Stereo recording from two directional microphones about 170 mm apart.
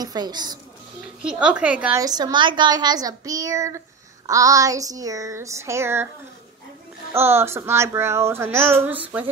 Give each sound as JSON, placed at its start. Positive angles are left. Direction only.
{"t": 0.0, "sound": "a woman's voice", "side_deg": -25}
{"t": 1.2, "sound": "speech", "side_deg": -5}
{"t": 2.0, "sound": "a woman's voice", "side_deg": -20}
{"t": 7.2, "sound": "speech", "side_deg": -15}